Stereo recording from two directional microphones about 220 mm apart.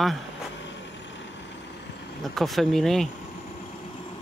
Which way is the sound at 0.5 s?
55° left (ahead or behind).